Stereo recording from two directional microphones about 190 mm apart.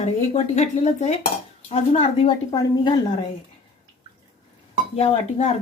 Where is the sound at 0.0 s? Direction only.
35° left (ahead or behind).